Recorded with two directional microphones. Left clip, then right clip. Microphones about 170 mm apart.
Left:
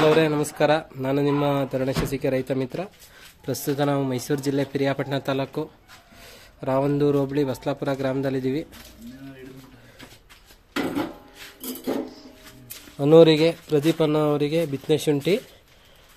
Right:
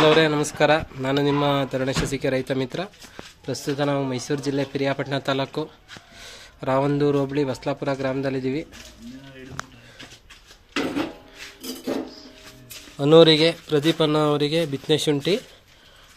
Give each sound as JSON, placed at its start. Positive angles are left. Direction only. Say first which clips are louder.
{"t": 0.0, "sound": "speech", "louder": "right 2 dB", "side_deg": 5}
{"t": 3.4, "sound": "speech", "louder": "even", "side_deg": 25}
{"t": 12.9, "sound": "speech", "louder": "even", "side_deg": 5}